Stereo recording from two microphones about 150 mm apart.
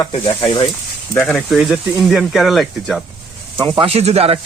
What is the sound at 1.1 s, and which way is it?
Speech, 5° left (ahead or behind).